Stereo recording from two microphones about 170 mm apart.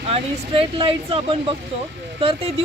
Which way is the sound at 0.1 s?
30° right (ahead or behind).